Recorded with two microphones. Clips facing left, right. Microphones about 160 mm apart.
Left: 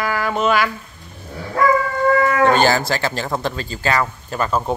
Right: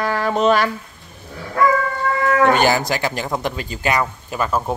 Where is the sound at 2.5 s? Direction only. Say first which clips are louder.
Left 1 dB; 15° right (ahead or behind).